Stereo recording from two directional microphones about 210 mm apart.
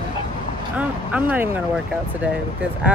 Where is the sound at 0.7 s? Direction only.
10° right (ahead or behind).